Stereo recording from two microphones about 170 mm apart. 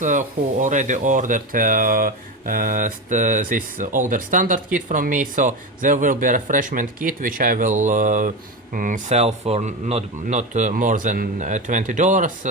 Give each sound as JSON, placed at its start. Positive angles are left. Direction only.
{"t": 0.0, "sound": "speech", "side_deg": -50}